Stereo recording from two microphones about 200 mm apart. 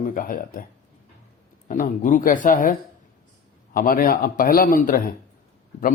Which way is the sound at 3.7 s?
45° left (ahead or behind).